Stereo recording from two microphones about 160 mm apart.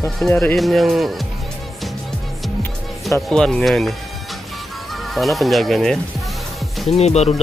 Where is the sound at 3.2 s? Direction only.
5° left (ahead or behind).